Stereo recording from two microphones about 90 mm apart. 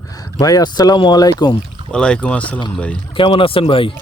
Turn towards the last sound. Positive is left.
turn(degrees=80)